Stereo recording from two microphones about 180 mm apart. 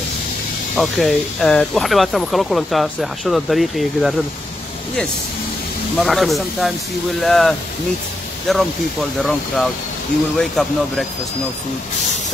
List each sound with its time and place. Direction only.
0.7 s speech: centre (ahead or behind)
5.9 s speech: centre (ahead or behind)
10.3 s speech: centre (ahead or behind)